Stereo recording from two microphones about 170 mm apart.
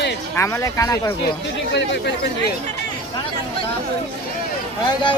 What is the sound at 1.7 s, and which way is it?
Speech, 90° left.